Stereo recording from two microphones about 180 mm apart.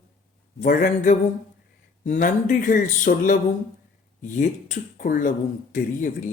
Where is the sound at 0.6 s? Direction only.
50° left (ahead or behind).